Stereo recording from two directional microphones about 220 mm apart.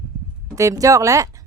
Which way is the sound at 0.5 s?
15° right (ahead or behind).